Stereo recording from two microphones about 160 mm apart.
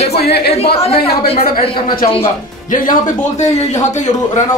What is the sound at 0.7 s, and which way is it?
Speech, 40° left (ahead or behind).